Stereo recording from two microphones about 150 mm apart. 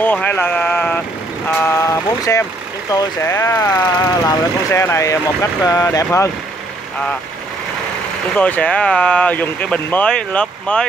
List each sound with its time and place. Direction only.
0.0 s a sound: 10° left (ahead or behind)
1.5 s speech: 15° left (ahead or behind)
8.4 s speech: 10° left (ahead or behind)